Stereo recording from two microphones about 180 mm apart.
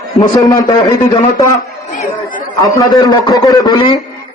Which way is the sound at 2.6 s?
20° left (ahead or behind).